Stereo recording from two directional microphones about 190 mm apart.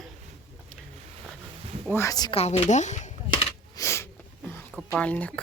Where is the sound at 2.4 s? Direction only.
35° left (ahead or behind).